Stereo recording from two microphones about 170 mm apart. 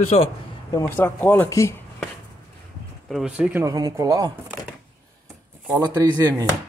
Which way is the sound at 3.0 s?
5° right (ahead or behind).